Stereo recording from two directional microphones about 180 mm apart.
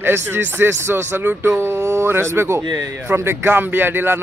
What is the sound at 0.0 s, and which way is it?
Speech, 10° right (ahead or behind).